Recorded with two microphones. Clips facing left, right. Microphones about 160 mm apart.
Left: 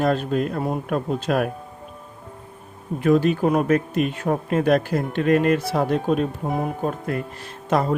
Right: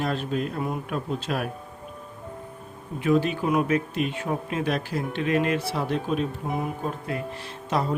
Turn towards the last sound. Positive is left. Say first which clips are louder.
# left 5 dB
turn(degrees=50)  # may be behind; listen again after turning